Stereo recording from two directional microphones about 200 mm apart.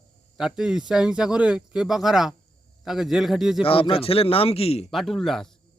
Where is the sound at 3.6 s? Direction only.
25° left (ahead or behind).